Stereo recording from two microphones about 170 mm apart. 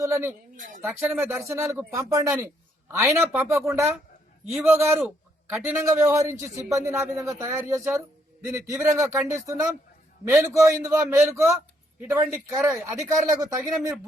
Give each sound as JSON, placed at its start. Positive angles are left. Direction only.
{"t": 0.0, "sound": "speech", "side_deg": -15}
{"t": 0.5, "sound": "speech", "side_deg": -50}
{"t": 0.9, "sound": "a man's voice", "side_deg": -5}